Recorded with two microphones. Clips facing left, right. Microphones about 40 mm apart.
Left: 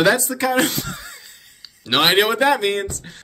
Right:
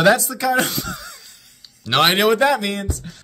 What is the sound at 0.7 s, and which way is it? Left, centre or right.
Speech, left.